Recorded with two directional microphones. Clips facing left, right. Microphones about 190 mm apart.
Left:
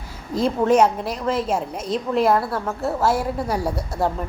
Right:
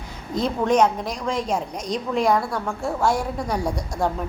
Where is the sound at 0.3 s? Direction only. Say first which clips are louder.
Left 2 dB; 5° left (ahead or behind).